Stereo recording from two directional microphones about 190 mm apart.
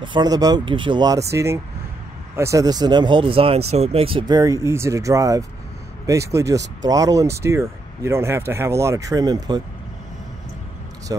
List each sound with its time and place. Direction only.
0.0 s speech: 25° right (ahead or behind)
11.1 s speech: 20° right (ahead or behind)